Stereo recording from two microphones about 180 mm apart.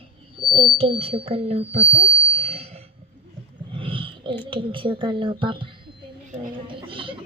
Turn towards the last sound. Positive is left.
turn(degrees=-30)  # may be behind; listen again after turning